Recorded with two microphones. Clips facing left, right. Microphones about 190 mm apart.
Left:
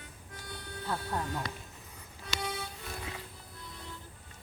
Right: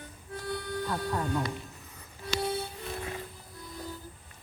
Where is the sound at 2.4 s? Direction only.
35° right (ahead or behind).